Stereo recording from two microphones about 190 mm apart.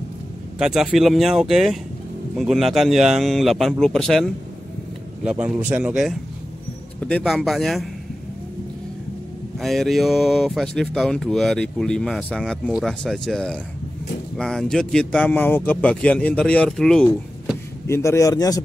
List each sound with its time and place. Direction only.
0.6 s speech: centre (ahead or behind)
9.6 s speech: centre (ahead or behind)
17.8 s a man's voice: 15° left (ahead or behind)